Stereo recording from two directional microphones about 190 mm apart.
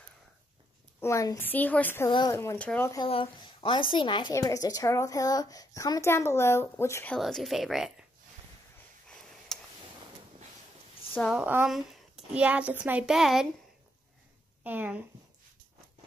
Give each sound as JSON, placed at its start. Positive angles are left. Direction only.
{"t": 1.0, "sound": "a woman's voice", "side_deg": 15}
{"t": 2.0, "sound": "speech", "side_deg": 25}
{"t": 2.3, "sound": "a woman's voice", "side_deg": 10}
{"t": 3.1, "sound": "speech", "side_deg": 25}
{"t": 7.2, "sound": "a woman's voice", "side_deg": 0}
{"t": 9.5, "sound": "tick", "side_deg": 0}
{"t": 11.1, "sound": "a woman's voice", "side_deg": -5}
{"t": 14.6, "sound": "speech", "side_deg": -10}